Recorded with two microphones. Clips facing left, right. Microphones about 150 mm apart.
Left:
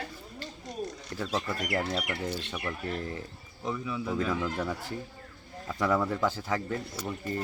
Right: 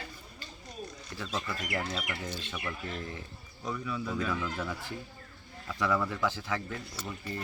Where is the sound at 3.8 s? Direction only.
15° left (ahead or behind).